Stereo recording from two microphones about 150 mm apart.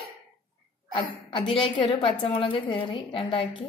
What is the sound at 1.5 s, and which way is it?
A woman's voice, 30° left (ahead or behind).